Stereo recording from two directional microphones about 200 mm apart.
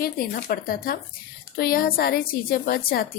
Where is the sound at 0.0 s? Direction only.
50° left (ahead or behind).